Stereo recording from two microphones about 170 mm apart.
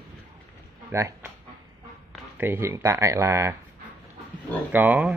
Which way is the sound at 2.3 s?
10° right (ahead or behind).